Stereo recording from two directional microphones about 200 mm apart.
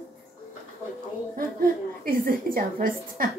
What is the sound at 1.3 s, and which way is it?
A woman's voice, 45° right (ahead or behind).